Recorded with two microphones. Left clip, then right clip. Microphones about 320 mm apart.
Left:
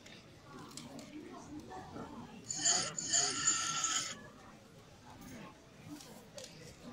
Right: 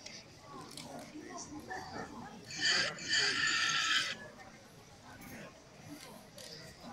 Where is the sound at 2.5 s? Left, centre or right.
Centre.